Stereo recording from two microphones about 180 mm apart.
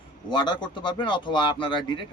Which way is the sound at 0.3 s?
25° left (ahead or behind).